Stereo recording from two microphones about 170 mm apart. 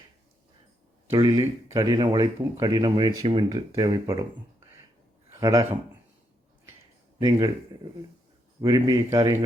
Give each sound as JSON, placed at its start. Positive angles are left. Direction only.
{"t": 1.1, "sound": "speech", "side_deg": -25}
{"t": 5.3, "sound": "a man's voice", "side_deg": -20}
{"t": 7.2, "sound": "speech", "side_deg": -25}
{"t": 8.6, "sound": "speech", "side_deg": -20}